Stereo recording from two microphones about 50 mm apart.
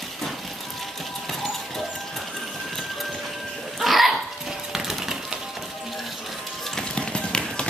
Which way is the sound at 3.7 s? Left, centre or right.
Centre.